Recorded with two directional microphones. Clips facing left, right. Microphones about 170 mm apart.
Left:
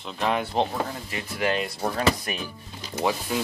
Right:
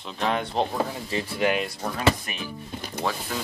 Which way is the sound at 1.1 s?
30° right (ahead or behind).